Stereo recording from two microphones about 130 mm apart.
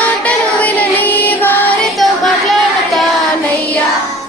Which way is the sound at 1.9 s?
Centre (ahead or behind).